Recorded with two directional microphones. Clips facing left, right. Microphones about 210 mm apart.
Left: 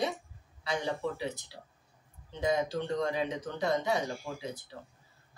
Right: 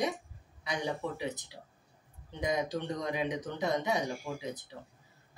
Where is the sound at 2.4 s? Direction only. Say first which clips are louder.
Left 2 dB; 15° right (ahead or behind).